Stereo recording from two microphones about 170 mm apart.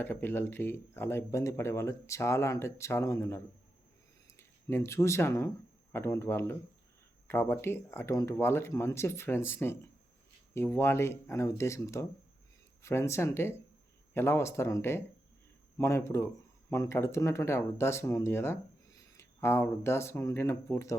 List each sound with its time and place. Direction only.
0.0 s speech: 10° left (ahead or behind)